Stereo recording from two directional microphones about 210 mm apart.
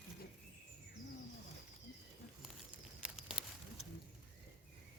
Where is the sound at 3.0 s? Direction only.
5° right (ahead or behind).